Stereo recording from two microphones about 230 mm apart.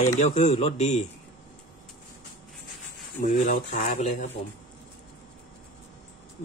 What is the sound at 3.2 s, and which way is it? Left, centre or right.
Speech, left.